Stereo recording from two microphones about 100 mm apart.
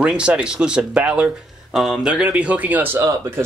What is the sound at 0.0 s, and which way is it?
Speech, 10° right (ahead or behind).